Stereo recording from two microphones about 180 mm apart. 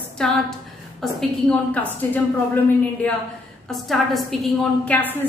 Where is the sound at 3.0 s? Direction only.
5° left (ahead or behind).